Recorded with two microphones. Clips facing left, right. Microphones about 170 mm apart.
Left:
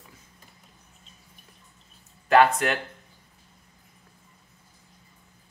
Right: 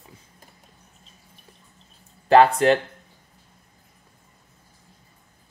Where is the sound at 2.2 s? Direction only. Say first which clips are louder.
Right 4 dB; 30° right (ahead or behind).